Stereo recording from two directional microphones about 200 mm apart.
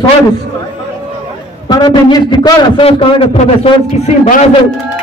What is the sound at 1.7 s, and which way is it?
A man's voice, 20° left (ahead or behind).